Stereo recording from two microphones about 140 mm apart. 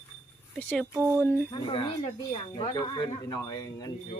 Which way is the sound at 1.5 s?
40° left (ahead or behind).